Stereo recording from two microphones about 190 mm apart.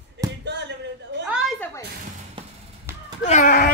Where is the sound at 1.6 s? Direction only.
15° left (ahead or behind).